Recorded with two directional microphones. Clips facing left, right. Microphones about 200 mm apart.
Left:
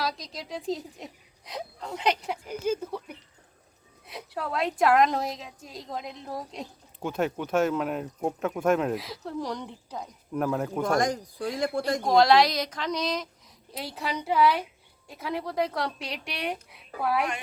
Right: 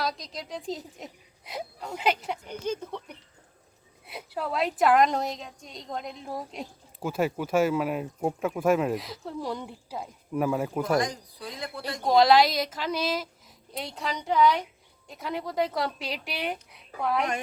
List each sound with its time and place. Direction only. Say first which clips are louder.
0.0 s speech: even; centre (ahead or behind)
10.9 s speech: left 1 dB; 45° left (ahead or behind)
12.0 s speech: right 1 dB; centre (ahead or behind)